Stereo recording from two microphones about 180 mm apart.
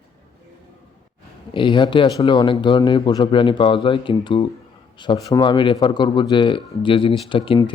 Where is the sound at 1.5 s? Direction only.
25° left (ahead or behind).